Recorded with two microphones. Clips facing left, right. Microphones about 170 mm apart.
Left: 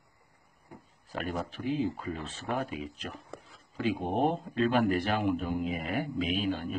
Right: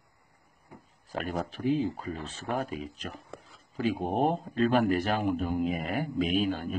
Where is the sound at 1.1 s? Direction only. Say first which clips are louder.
Right 2 dB; 40° right (ahead or behind).